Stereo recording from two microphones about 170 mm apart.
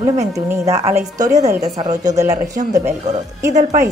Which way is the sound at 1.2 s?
45° right (ahead or behind).